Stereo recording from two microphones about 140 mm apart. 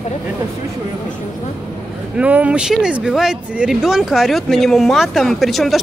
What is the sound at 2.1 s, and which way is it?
Speech, 10° right (ahead or behind).